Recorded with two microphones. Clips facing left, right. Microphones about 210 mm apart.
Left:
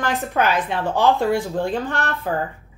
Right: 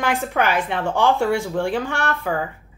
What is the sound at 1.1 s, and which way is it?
Speech, 75° right (ahead or behind).